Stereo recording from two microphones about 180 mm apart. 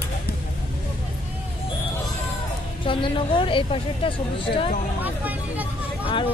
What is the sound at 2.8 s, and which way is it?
Speech, 30° left (ahead or behind).